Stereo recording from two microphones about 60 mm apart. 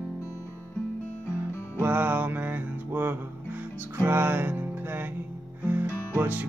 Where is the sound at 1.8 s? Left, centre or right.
Right.